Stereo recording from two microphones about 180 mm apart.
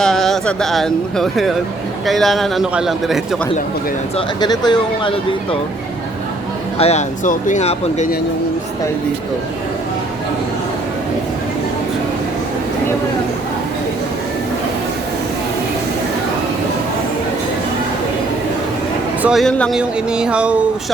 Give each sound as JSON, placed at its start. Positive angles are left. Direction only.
{"t": 0.0, "sound": "speech", "side_deg": 0}
{"t": 4.4, "sound": "speech", "side_deg": 25}
{"t": 6.7, "sound": "speech", "side_deg": 35}
{"t": 19.2, "sound": "speech", "side_deg": 0}